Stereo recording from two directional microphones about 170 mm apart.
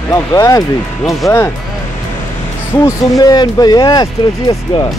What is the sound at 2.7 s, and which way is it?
Speech, 20° left (ahead or behind).